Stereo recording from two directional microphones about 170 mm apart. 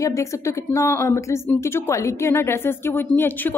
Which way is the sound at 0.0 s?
20° left (ahead or behind).